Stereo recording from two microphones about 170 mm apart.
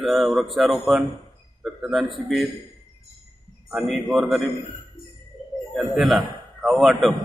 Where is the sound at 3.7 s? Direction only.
5° right (ahead or behind).